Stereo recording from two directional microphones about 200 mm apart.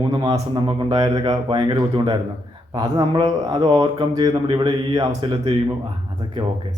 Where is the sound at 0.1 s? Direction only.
20° right (ahead or behind).